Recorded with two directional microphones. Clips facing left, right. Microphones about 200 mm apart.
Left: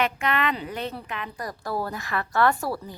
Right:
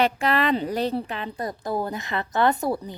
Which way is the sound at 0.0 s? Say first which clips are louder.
Right 3 dB; 35° right (ahead or behind).